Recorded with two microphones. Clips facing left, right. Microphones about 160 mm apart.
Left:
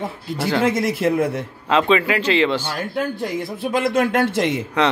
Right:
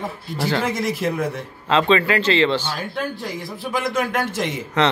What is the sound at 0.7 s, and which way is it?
Speech, 60° left (ahead or behind).